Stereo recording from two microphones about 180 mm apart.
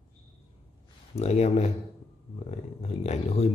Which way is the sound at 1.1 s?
35° left (ahead or behind).